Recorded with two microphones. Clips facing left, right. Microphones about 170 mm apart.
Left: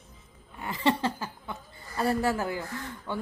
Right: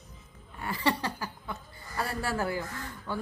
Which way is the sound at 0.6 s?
20° left (ahead or behind).